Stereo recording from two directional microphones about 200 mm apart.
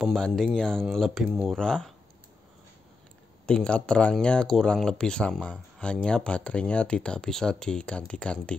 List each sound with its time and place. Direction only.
0.0 s speech: centre (ahead or behind)
3.4 s speech: 5° left (ahead or behind)